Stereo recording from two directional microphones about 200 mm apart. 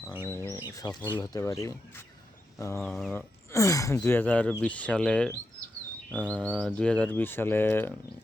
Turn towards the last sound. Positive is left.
turn(degrees=10)  # may be behind; listen again after turning